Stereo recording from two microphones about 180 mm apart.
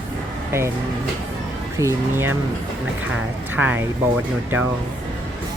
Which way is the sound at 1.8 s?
15° right (ahead or behind).